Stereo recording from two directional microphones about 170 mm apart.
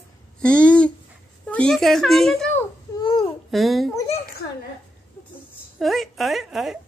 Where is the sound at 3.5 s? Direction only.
Centre (ahead or behind).